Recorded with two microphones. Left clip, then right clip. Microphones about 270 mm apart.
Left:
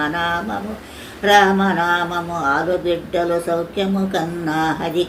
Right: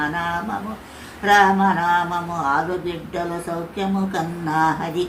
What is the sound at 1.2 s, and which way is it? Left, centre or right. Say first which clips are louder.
Speech: left 1 dB; centre.